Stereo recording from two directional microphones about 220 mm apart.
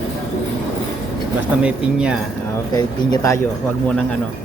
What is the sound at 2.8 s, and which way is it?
Speech, 15° left (ahead or behind).